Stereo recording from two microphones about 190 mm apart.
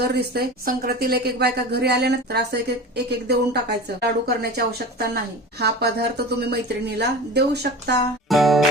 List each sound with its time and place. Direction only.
0.0 s a woman's voice: 55° right (ahead or behind)
8.3 s music: centre (ahead or behind)